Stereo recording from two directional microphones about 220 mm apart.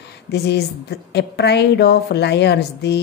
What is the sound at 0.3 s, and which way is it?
A woman's voice, 50° left (ahead or behind).